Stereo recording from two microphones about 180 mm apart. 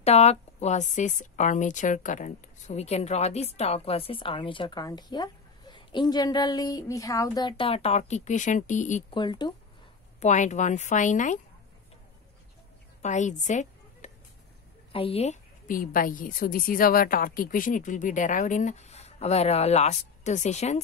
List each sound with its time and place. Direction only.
0.0 s a woman's voice: 35° left (ahead or behind)
9.1 s speech: 25° left (ahead or behind)
10.2 s a woman's voice: 40° left (ahead or behind)
13.0 s a sound: 40° left (ahead or behind)
14.9 s a woman's voice: 30° left (ahead or behind)